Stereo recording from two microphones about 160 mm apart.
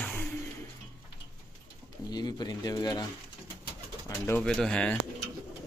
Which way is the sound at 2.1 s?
25° left (ahead or behind).